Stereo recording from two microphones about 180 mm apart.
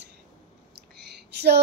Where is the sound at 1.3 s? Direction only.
65° right (ahead or behind).